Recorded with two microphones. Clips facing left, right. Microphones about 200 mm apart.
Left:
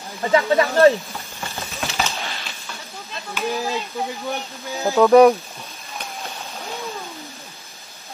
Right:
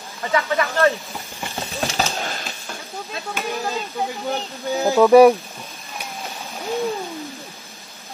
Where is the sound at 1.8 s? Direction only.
50° right (ahead or behind).